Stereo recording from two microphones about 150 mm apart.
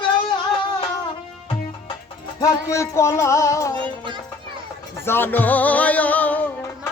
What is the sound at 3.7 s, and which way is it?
Music, 35° right (ahead or behind).